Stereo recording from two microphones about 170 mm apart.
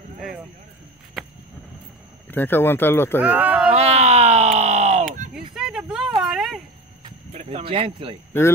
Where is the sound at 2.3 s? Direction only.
10° left (ahead or behind).